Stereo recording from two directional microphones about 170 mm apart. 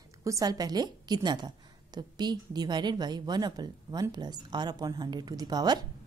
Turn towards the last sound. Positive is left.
turn(degrees=-25)  # may be behind; listen again after turning